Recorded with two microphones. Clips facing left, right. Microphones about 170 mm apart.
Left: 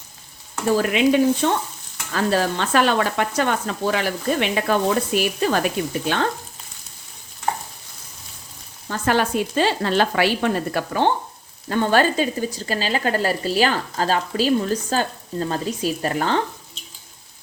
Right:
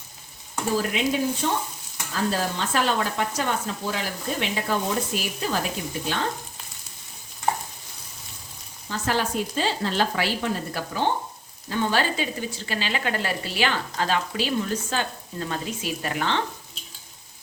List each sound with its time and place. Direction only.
0.8 s speech: 70° left (ahead or behind)
8.9 s frying: 60° left (ahead or behind)
11.7 s speech: 55° left (ahead or behind)